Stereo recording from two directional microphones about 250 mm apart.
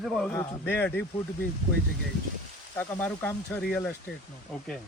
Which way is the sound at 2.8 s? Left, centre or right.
Centre.